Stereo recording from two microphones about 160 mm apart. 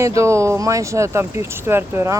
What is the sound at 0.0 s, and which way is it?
Speech, 20° right (ahead or behind).